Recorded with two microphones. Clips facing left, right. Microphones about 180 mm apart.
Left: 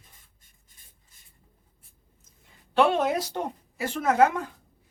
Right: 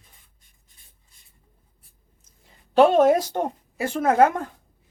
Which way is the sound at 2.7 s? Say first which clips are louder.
Right 7 dB; 40° right (ahead or behind).